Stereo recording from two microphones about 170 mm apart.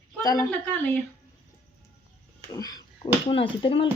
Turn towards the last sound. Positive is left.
turn(degrees=30)  # may be behind; listen again after turning